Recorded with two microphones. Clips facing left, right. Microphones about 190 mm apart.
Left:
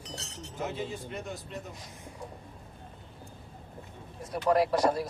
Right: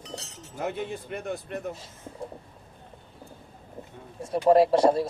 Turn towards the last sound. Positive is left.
turn(degrees=-25)  # may be behind; listen again after turning